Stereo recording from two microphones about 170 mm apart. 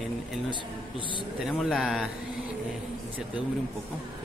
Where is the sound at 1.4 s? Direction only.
Centre (ahead or behind).